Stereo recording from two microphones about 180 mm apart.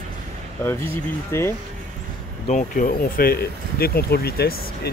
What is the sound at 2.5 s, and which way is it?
Speech, 45° left (ahead or behind).